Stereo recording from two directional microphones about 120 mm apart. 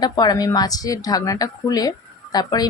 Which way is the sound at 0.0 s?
35° left (ahead or behind).